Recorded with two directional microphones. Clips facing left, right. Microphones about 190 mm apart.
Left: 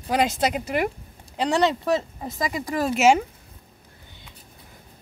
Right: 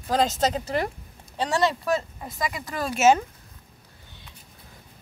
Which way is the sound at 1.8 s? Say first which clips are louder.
Left 2 dB; 25° left (ahead or behind).